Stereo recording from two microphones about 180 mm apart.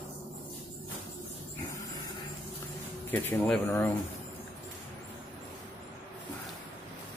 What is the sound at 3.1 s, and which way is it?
Speech, 10° left (ahead or behind).